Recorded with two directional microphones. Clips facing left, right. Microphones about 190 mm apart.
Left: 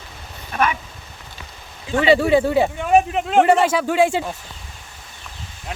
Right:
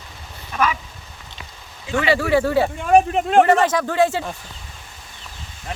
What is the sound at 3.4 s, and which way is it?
Speech, 10° left (ahead or behind).